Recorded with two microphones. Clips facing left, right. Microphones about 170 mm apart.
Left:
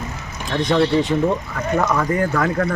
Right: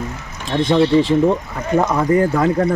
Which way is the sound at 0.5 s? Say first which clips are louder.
Right 3 dB; 25° right (ahead or behind).